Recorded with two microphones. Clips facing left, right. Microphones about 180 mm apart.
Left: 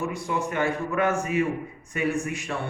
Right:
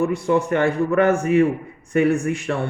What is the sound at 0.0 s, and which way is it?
Speech, 60° right (ahead or behind).